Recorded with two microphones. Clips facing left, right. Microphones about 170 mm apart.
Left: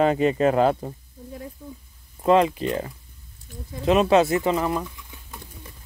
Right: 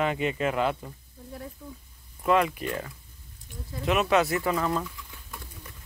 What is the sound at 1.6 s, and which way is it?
Speech, 15° left (ahead or behind).